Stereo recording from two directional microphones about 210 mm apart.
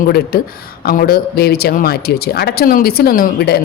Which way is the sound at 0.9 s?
45° left (ahead or behind).